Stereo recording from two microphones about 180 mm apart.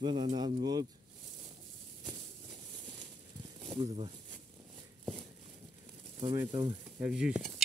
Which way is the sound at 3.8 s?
30° right (ahead or behind).